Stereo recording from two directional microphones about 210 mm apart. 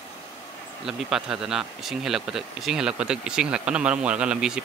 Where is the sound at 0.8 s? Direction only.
Centre (ahead or behind).